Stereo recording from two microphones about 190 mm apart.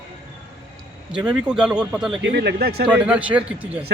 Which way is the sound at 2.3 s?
60° right (ahead or behind).